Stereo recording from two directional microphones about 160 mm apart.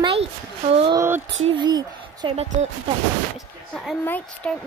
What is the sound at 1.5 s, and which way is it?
Speech, 25° right (ahead or behind).